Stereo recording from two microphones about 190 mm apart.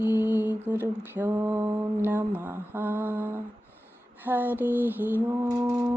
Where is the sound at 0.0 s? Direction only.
10° right (ahead or behind).